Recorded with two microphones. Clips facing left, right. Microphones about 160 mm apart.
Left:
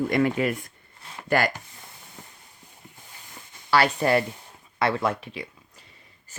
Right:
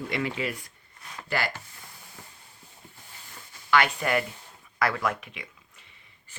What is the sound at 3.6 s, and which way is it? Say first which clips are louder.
Speech: left 3 dB; 35° left (ahead or behind).